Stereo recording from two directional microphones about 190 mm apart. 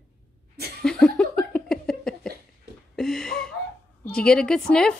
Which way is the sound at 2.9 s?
Centre (ahead or behind).